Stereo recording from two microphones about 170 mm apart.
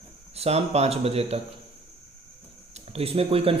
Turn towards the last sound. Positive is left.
turn(degrees=-35)  # may be behind; listen again after turning